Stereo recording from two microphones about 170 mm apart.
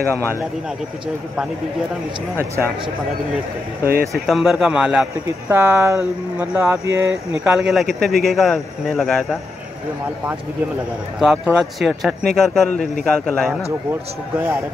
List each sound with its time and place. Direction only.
3.8 s speech: 60° right (ahead or behind)
4.1 s speech: centre (ahead or behind); by 7.2 s 15° right (ahead or behind)
7.3 s speech: 5° right (ahead or behind)
11.1 s speech: 5° right (ahead or behind)